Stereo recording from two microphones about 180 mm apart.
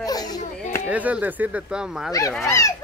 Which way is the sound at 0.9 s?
10° right (ahead or behind).